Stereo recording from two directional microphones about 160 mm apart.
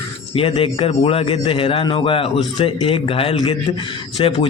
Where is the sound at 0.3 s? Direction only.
35° left (ahead or behind).